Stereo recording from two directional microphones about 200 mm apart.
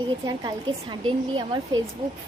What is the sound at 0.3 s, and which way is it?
Speech, 20° right (ahead or behind).